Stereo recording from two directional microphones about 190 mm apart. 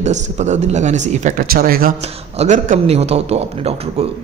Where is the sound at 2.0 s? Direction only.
35° right (ahead or behind).